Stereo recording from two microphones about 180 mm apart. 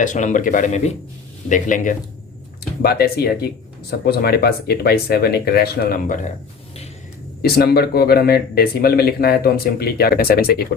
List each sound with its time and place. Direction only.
0.0 s speech: 45° left (ahead or behind)
2.8 s speech: 60° left (ahead or behind)
7.4 s speech: 60° left (ahead or behind)